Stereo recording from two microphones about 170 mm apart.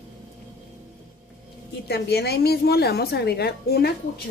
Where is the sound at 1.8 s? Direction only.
70° left (ahead or behind).